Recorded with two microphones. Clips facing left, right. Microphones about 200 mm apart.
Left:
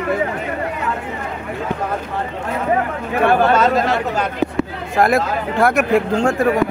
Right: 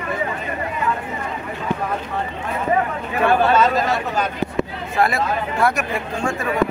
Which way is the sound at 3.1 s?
65° left (ahead or behind).